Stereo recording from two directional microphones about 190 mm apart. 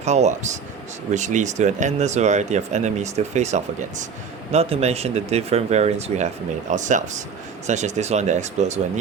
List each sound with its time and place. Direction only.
0.0 s speech: 35° right (ahead or behind)